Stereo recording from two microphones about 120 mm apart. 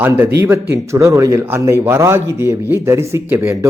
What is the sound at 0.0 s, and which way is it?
A man's voice, 20° right (ahead or behind).